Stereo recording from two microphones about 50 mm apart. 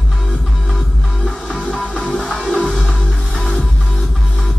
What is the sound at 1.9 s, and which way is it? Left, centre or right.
Music, centre.